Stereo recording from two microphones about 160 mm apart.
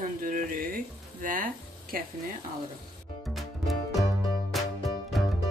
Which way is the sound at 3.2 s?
Centre (ahead or behind).